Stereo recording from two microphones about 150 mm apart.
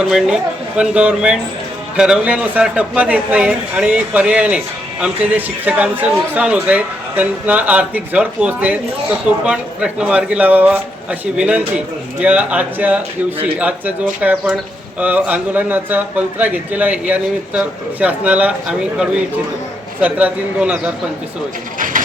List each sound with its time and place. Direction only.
0.1 s a man's voice: 5° right (ahead or behind)
21.8 s speech: 60° right (ahead or behind)